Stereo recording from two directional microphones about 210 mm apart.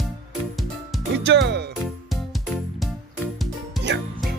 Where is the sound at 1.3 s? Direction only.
55° right (ahead or behind).